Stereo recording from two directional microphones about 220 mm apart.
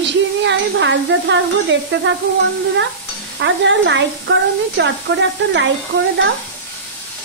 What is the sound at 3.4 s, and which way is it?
Speech, 55° right (ahead or behind).